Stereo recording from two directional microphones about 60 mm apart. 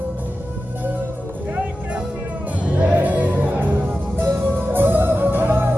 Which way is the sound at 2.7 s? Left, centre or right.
Centre.